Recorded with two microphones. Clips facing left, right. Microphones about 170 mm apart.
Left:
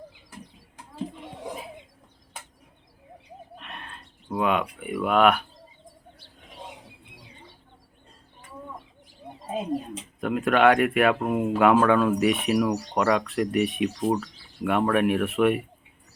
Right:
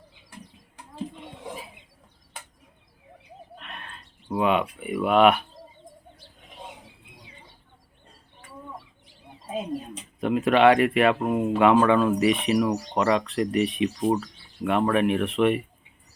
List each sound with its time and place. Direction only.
4.3 s speech: centre (ahead or behind)
9.9 s speech: centre (ahead or behind)